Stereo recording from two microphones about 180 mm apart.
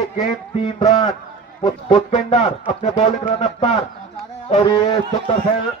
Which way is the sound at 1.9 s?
40° left (ahead or behind).